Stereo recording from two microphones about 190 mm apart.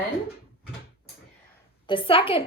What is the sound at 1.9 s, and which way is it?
Speech, 25° left (ahead or behind).